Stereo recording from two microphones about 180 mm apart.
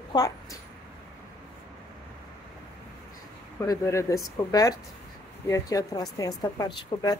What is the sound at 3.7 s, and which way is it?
A woman's voice, 15° left (ahead or behind).